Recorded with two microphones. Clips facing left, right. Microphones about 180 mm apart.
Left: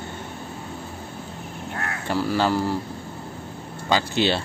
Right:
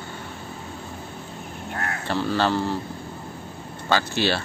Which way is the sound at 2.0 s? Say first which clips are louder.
Left 1 dB; 10° left (ahead or behind).